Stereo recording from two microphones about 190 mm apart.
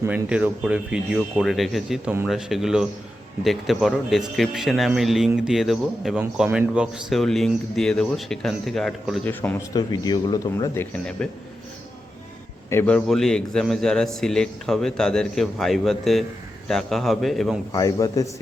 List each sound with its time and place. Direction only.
0.0 s speech: 10° right (ahead or behind)
9.2 s a man's voice: 10° left (ahead or behind)
9.9 s speech: 20° left (ahead or behind)
12.7 s speech: 5° left (ahead or behind)
17.7 s a man's voice: 20° left (ahead or behind)